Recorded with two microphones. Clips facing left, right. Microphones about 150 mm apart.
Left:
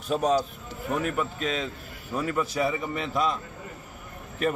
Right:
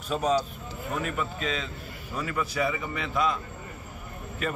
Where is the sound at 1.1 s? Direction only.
45° left (ahead or behind).